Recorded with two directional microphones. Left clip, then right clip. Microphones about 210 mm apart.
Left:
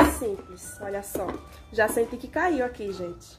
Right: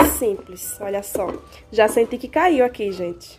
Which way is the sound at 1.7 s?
40° right (ahead or behind).